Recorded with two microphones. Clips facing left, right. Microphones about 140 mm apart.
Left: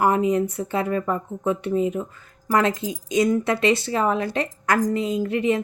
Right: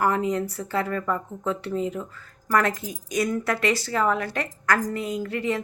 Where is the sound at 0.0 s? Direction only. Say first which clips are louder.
Left 4 dB; 20° left (ahead or behind).